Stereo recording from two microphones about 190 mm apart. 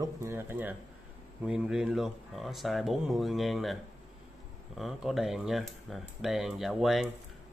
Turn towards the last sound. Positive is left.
turn(degrees=0)  # may be behind; listen again after turning